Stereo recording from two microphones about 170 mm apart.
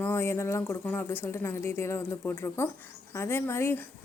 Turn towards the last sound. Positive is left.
turn(degrees=15)  # may be behind; listen again after turning